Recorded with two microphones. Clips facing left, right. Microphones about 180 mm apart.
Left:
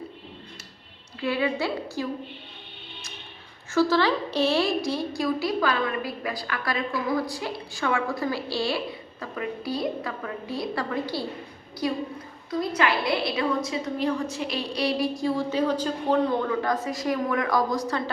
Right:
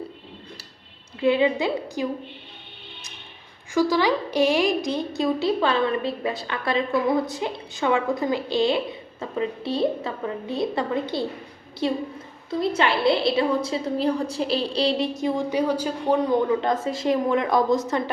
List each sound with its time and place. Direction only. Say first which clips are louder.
1.2 s a woman's voice: right 6 dB; 20° right (ahead or behind)
3.8 s a woman's voice: right 1 dB; 15° right (ahead or behind)
16.5 s a woman's voice: right 3 dB; 25° right (ahead or behind)